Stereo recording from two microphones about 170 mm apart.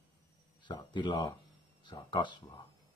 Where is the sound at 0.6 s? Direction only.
25° left (ahead or behind).